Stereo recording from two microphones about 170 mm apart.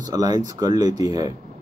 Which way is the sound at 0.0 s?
20° right (ahead or behind).